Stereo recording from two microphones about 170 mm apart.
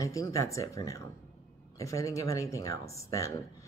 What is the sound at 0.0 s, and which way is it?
Speech, 20° left (ahead or behind).